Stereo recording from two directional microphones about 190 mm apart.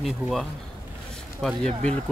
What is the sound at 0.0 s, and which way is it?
Speech, centre (ahead or behind).